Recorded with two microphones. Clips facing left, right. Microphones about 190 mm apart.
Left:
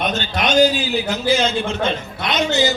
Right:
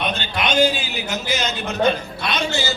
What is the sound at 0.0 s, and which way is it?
A man's voice, 45° left (ahead or behind).